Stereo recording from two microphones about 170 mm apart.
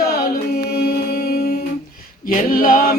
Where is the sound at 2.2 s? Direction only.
55° left (ahead or behind).